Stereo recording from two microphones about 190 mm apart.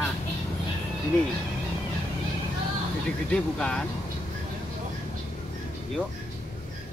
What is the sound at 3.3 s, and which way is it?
Speech, 5° left (ahead or behind).